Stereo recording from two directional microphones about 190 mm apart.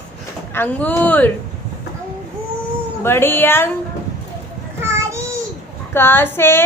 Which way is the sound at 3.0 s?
10° left (ahead or behind).